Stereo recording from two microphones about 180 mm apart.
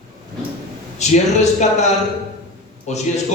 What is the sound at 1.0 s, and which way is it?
Speech, 40° left (ahead or behind).